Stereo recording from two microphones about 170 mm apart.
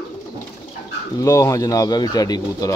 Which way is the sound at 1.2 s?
20° left (ahead or behind).